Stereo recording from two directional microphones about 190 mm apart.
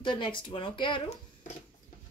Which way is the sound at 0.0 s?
25° left (ahead or behind).